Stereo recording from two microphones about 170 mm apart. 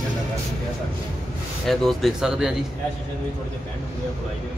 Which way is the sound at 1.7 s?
Centre (ahead or behind).